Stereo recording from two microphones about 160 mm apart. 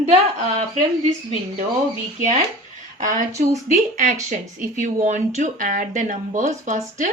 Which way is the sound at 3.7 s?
45° right (ahead or behind).